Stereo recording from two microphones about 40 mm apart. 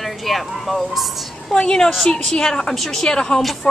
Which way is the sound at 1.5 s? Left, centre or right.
Centre.